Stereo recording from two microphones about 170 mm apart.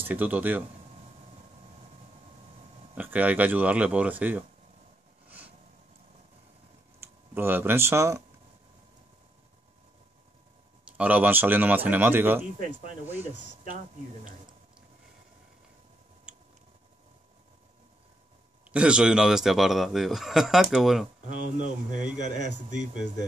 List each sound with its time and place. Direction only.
0.0 s speech: 10° right (ahead or behind)
2.9 s speech: 10° right (ahead or behind)
7.0 s speech: 15° right (ahead or behind)
10.9 s speech: 10° right (ahead or behind)
16.3 s a sound: 5° right (ahead or behind)
18.7 s speech: 5° right (ahead or behind)
21.3 s speech: 45° right (ahead or behind)